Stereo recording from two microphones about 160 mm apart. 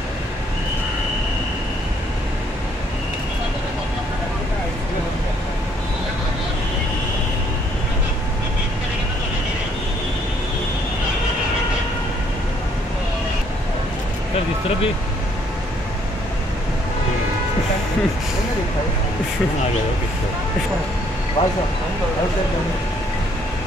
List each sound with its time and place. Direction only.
21.4 s speech: 45° left (ahead or behind)